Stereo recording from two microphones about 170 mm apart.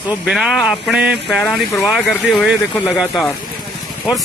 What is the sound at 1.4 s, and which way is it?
Speech, 15° left (ahead or behind).